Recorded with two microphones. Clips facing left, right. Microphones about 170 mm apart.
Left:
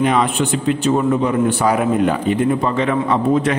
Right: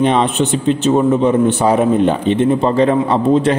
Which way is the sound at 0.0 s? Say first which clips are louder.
Right 3 dB; 25° right (ahead or behind).